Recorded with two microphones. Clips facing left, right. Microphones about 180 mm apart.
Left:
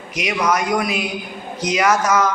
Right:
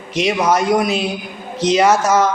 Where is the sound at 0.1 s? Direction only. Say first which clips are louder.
Right 4 dB; 30° right (ahead or behind).